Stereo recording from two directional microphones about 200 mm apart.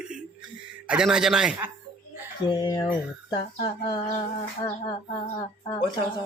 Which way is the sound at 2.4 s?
25° left (ahead or behind).